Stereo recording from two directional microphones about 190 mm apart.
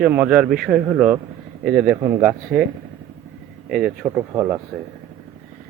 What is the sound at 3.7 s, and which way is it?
Speech, 5° right (ahead or behind).